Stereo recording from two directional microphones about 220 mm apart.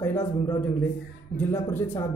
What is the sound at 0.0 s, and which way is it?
Speech, 10° left (ahead or behind).